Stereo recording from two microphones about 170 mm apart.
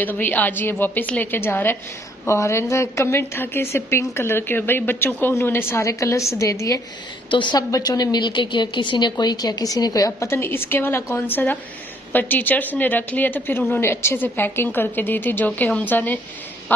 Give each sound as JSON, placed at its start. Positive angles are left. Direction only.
{"t": 0.0, "sound": "a woman's voice", "side_deg": 10}
{"t": 7.2, "sound": "a woman's voice", "side_deg": 30}